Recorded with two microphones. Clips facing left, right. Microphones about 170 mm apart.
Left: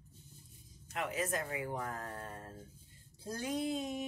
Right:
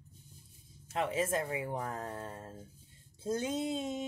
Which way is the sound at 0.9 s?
30° right (ahead or behind).